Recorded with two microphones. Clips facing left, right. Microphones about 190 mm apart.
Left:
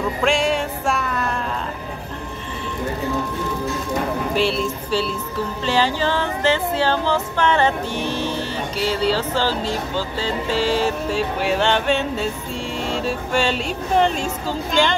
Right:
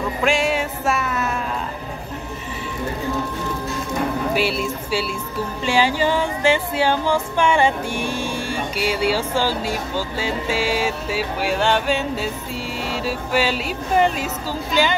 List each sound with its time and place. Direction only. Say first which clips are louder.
0.2 s music: even; centre (ahead or behind)
4.3 s female singing: left 1 dB; 5° right (ahead or behind)
12.8 s speech: left 2 dB; 5° right (ahead or behind)